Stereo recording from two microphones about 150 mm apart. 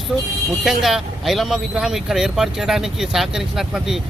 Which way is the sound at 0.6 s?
Centre (ahead or behind).